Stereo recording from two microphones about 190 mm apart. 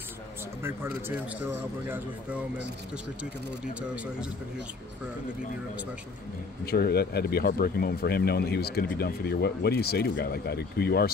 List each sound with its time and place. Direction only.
0.6 s speech: 10° right (ahead or behind)
6.6 s speech: 55° left (ahead or behind)